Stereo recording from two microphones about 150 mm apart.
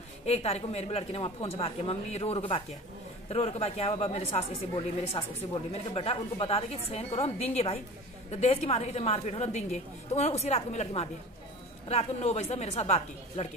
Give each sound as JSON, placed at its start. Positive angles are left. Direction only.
{"t": 0.2, "sound": "a woman's voice", "side_deg": 45}